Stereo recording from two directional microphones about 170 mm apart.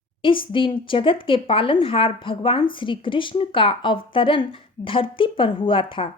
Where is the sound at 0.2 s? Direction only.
30° left (ahead or behind).